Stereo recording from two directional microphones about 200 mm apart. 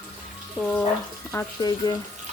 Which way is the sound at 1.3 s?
15° left (ahead or behind).